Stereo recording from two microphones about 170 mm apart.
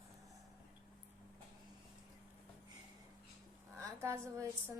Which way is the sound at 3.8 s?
15° right (ahead or behind).